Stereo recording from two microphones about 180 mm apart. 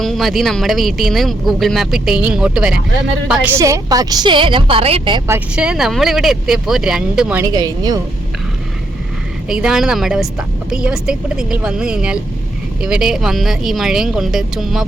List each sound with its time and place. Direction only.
0.0 s speech: centre (ahead or behind)
3.6 s a woman's voice: 20° right (ahead or behind)
5.3 s speech: 5° right (ahead or behind)
7.4 s a woman's voice: 20° right (ahead or behind)
9.5 s speech: 5° right (ahead or behind)